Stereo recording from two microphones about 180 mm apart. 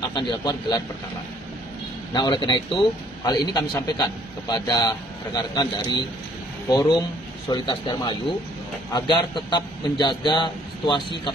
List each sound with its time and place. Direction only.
0.1 s a man's voice: 20° left (ahead or behind)
2.1 s a man's voice: 25° left (ahead or behind)